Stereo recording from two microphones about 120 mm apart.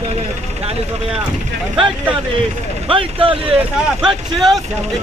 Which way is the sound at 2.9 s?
50° right (ahead or behind).